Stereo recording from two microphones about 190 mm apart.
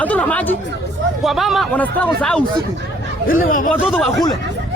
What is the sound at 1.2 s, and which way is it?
A man's voice, centre (ahead or behind).